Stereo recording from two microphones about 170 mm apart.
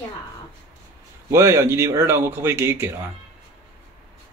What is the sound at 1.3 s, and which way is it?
Speech, 15° right (ahead or behind).